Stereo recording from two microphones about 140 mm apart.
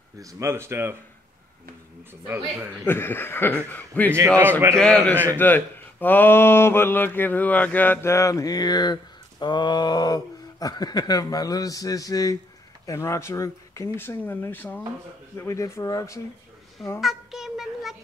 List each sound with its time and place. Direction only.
0.2 s speech: 25° right (ahead or behind)
2.2 s a man's voice: 15° right (ahead or behind)
2.9 s speech: 15° left (ahead or behind)
17.0 s a sound: centre (ahead or behind)